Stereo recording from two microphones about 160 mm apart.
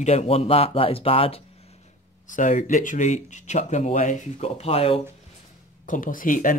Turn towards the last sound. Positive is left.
turn(degrees=55)  # may be behind; listen again after turning